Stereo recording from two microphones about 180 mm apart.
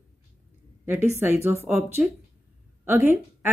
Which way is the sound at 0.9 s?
10° right (ahead or behind).